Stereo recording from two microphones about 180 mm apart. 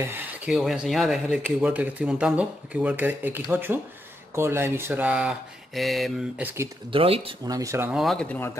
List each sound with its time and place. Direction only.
0.5 s speech: centre (ahead or behind)
6.9 s speech: 30° right (ahead or behind)
7.9 s speech: centre (ahead or behind)